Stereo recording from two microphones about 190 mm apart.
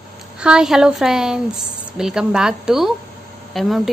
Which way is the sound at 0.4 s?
5° right (ahead or behind).